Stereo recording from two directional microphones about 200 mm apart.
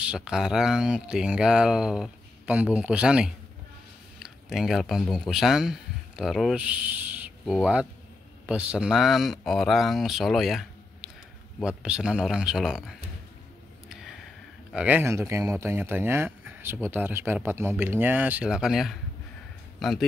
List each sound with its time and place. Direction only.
0.0 s speech: 5° right (ahead or behind)
14.7 s speech: 5° right (ahead or behind)